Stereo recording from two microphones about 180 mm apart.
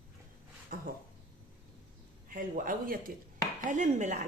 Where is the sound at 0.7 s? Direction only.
55° right (ahead or behind).